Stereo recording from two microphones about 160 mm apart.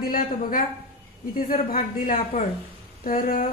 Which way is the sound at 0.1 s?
60° left (ahead or behind).